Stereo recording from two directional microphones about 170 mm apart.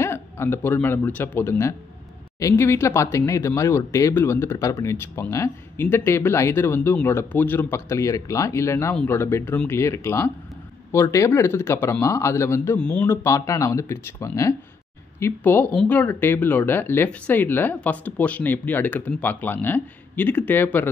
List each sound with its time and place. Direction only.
0.0 s a man's voice: 15° left (ahead or behind)